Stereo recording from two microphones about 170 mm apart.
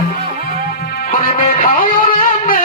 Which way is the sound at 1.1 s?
55° left (ahead or behind).